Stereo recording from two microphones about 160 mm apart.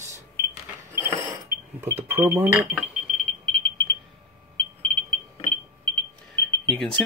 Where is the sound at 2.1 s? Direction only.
35° right (ahead or behind).